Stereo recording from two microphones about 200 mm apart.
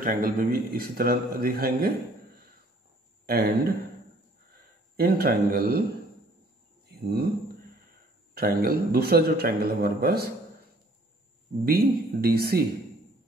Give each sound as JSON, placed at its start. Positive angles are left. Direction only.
{"t": 0.0, "sound": "a man's voice", "side_deg": -45}
{"t": 3.3, "sound": "speech", "side_deg": -50}
{"t": 4.9, "sound": "a man's voice", "side_deg": -50}
{"t": 6.9, "sound": "speech", "side_deg": -55}
{"t": 8.4, "sound": "a man's voice", "side_deg": -50}
{"t": 11.6, "sound": "a man's voice", "side_deg": -50}